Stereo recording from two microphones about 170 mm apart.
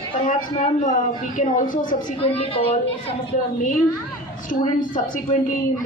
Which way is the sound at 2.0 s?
35° left (ahead or behind).